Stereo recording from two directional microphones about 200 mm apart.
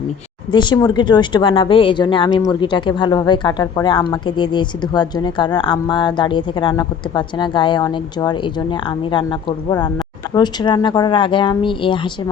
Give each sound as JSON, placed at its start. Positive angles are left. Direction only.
{"t": 0.5, "sound": "a woman's voice", "side_deg": 25}